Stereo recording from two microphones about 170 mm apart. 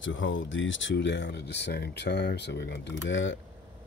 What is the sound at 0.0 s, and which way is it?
Speech, 90° left.